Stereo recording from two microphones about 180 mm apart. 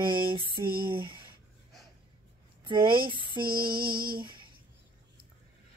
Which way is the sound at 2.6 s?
25° right (ahead or behind).